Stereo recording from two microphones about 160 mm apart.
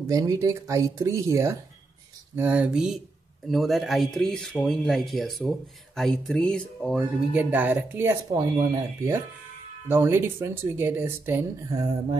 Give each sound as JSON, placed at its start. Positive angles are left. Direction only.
{"t": 0.0, "sound": "speech", "side_deg": -20}
{"t": 7.3, "sound": "speech", "side_deg": -10}